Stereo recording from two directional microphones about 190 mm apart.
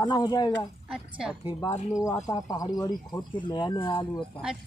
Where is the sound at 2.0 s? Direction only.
20° left (ahead or behind).